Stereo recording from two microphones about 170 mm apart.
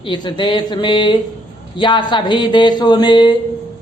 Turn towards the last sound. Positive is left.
turn(degrees=25)  # may be behind; listen again after turning